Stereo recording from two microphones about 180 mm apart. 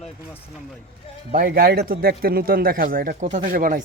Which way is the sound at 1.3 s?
55° right (ahead or behind).